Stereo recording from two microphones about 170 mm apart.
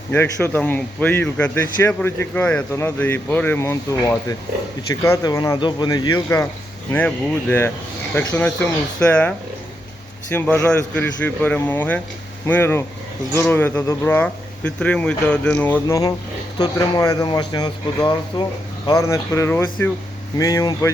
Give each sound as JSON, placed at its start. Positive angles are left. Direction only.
{"t": 0.1, "sound": "a man's voice", "side_deg": 10}
{"t": 10.3, "sound": "a man's voice", "side_deg": 10}
{"t": 16.6, "sound": "speech", "side_deg": 25}